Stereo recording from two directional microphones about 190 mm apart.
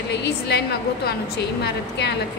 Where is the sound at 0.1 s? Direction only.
60° left (ahead or behind).